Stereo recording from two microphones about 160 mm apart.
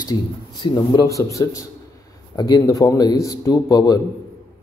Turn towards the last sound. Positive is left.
turn(degrees=25)  # may be behind; listen again after turning